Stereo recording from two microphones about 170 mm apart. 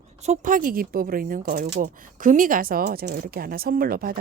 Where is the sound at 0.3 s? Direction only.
50° right (ahead or behind).